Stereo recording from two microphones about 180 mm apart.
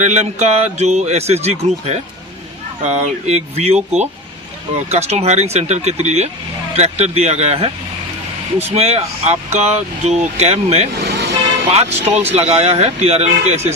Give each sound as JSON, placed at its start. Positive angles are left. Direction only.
{"t": 0.0, "sound": "speech", "side_deg": -40}
{"t": 10.9, "sound": "vehicle", "side_deg": -60}
{"t": 11.7, "sound": "speech", "side_deg": -35}